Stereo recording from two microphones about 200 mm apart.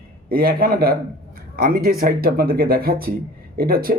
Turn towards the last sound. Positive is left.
turn(degrees=-50)  # may be behind; listen again after turning